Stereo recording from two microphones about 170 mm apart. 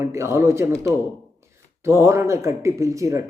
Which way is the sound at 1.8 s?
15° right (ahead or behind).